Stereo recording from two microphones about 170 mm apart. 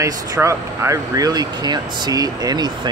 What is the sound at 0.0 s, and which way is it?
Speech, 15° right (ahead or behind).